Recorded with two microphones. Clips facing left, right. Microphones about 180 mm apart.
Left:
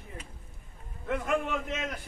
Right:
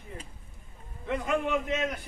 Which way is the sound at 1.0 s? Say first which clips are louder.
Right 1 dB; centre (ahead or behind).